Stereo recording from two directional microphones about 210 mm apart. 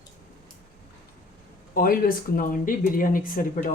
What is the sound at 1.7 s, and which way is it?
Speech, 45° left (ahead or behind).